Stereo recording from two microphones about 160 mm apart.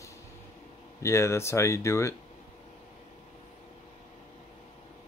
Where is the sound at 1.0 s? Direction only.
15° left (ahead or behind).